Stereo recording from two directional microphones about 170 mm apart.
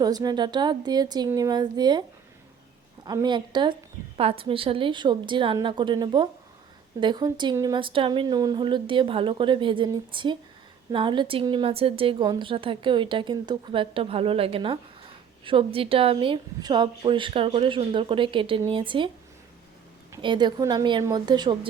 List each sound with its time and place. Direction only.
0.0 s a woman's voice: 25° right (ahead or behind)
20.2 s a woman's voice: 25° right (ahead or behind)